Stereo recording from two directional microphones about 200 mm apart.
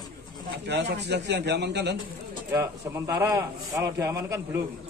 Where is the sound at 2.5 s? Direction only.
15° right (ahead or behind).